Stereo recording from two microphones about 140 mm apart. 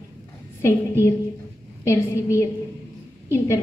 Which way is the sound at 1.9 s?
20° left (ahead or behind).